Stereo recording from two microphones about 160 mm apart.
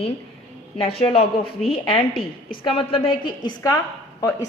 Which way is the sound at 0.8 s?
40° left (ahead or behind).